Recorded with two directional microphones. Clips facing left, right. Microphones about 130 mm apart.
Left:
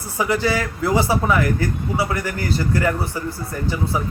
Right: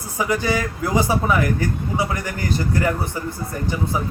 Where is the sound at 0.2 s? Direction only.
15° right (ahead or behind).